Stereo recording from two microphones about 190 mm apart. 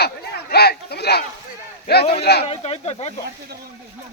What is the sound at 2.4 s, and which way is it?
Speech, 30° left (ahead or behind).